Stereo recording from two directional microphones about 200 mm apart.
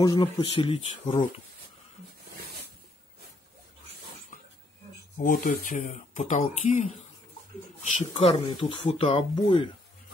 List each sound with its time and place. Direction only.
0.0 s speech: 25° left (ahead or behind)
5.1 s speech: 45° left (ahead or behind); by 9.4 s 30° left (ahead or behind)